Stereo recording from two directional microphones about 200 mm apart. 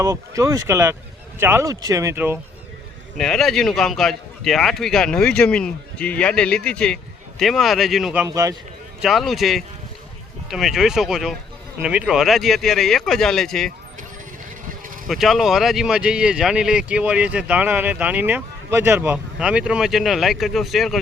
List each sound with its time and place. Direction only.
0.0 s speech: 15° right (ahead or behind)
3.2 s speech: centre (ahead or behind)
8.3 s speech: 15° right (ahead or behind)
9.0 s speech: centre (ahead or behind)
15.0 s speech: centre (ahead or behind)